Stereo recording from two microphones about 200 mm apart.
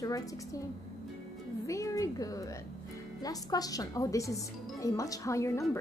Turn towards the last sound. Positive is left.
turn(degrees=15)  # may be behind; listen again after turning